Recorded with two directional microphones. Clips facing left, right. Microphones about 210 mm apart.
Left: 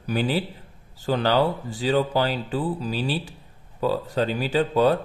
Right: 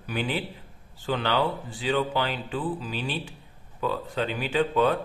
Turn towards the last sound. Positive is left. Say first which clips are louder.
# left 3 dB
turn(degrees=35)  # may be behind; listen again after turning